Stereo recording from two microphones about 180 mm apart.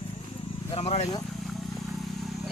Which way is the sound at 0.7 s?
35° left (ahead or behind).